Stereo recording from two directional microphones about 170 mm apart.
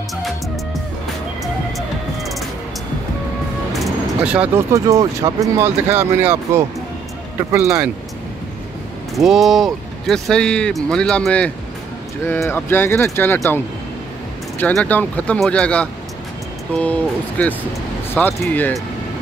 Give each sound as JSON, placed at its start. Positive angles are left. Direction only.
{"t": 1.4, "sound": "music", "side_deg": 0}
{"t": 3.7, "sound": "vehicle", "side_deg": -5}
{"t": 4.7, "sound": "speech", "side_deg": -20}
{"t": 9.1, "sound": "speech", "side_deg": 0}
{"t": 14.6, "sound": "speech", "side_deg": 10}